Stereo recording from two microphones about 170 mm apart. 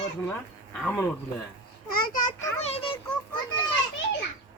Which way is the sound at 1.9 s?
55° left (ahead or behind).